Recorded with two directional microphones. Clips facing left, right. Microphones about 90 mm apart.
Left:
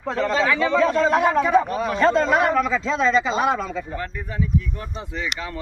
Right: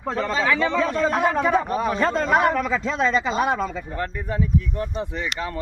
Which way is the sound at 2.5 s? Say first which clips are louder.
Left 2 dB; 50° right (ahead or behind).